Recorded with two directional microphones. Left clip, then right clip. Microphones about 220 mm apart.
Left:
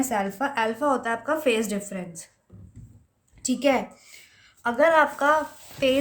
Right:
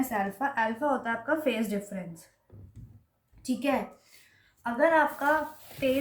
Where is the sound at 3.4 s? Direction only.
50° left (ahead or behind).